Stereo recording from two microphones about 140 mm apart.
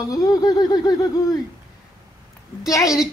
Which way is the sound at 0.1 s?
25° left (ahead or behind).